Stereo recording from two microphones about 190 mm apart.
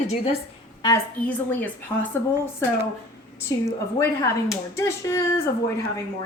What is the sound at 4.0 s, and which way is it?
Speech, 15° left (ahead or behind).